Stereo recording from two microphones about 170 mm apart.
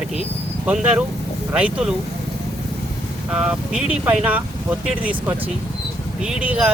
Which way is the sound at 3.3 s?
5° right (ahead or behind).